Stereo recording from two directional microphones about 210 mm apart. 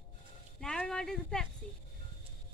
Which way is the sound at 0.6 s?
5° left (ahead or behind).